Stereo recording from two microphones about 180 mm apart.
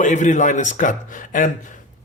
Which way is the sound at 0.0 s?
45° left (ahead or behind).